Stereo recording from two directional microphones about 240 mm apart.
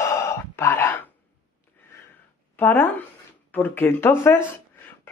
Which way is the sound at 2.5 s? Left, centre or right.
Centre.